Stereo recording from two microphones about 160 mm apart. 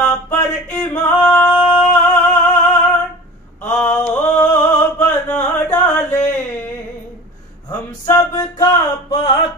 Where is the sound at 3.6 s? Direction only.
15° left (ahead or behind).